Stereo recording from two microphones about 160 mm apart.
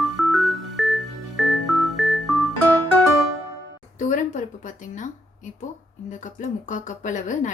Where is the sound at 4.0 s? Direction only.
55° left (ahead or behind).